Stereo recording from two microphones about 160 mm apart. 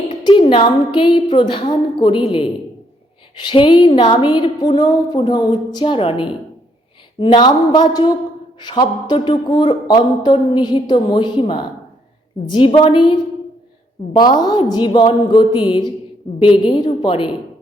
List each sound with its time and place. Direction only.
0.1 s a woman's voice: 30° left (ahead or behind)
14.2 s a woman's voice: 25° left (ahead or behind)